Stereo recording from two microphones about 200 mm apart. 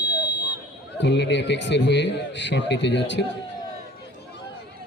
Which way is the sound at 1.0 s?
60° left (ahead or behind).